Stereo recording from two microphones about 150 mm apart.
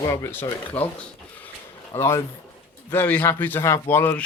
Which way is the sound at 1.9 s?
20° left (ahead or behind).